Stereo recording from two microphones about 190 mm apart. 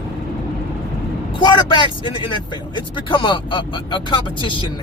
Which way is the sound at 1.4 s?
25° left (ahead or behind).